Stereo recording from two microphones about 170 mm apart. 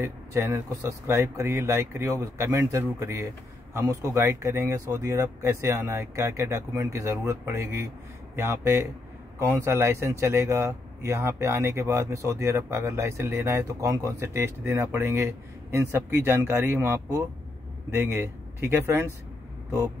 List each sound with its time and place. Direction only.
0.0 s speech: 15° right (ahead or behind)